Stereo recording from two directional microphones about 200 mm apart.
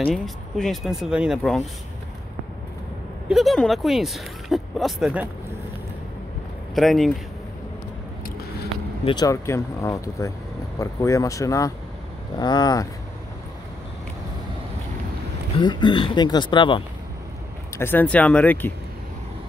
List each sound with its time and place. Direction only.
0.0 s speech: centre (ahead or behind)
3.3 s speech: centre (ahead or behind)
6.7 s speech: centre (ahead or behind)
9.0 s speech: 20° left (ahead or behind)
15.5 s speech: 25° left (ahead or behind)
17.7 s speech: 10° left (ahead or behind)